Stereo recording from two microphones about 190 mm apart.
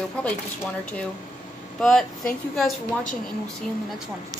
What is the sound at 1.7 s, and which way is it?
Speech, centre (ahead or behind).